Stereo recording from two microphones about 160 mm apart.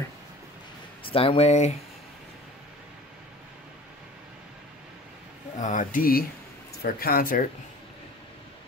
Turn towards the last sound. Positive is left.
turn(degrees=60)  # may be behind; listen again after turning